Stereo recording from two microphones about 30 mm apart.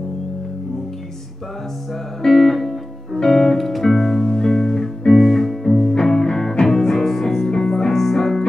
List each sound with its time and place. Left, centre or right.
2.2 s music: centre
3.2 s music: centre
3.5 s music: centre
5.9 s music: centre